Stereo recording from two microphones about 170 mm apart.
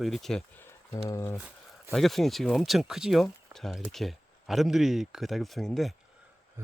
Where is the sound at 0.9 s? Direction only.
15° left (ahead or behind).